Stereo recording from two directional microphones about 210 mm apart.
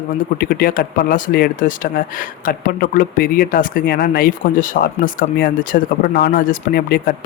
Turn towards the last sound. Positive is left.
turn(degrees=45)  # may be behind; listen again after turning